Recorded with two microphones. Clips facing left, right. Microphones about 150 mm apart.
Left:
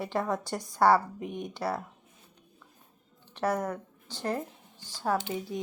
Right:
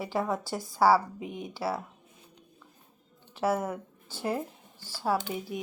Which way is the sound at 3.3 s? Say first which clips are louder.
Right 1 dB; 5° right (ahead or behind).